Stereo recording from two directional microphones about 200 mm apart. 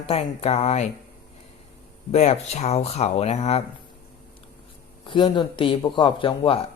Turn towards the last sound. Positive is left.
turn(degrees=25)  # may be behind; listen again after turning